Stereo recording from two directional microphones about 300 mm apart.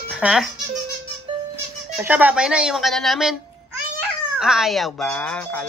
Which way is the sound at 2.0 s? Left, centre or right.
Centre.